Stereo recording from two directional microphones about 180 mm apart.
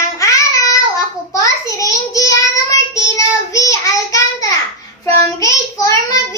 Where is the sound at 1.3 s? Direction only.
20° left (ahead or behind).